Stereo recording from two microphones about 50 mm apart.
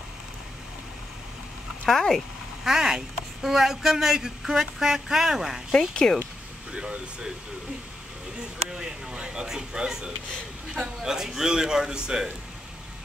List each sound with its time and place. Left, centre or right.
1.9 s speech: centre
2.6 s speech: centre
5.7 s speech: centre
6.7 s speech: centre
8.7 s speech: centre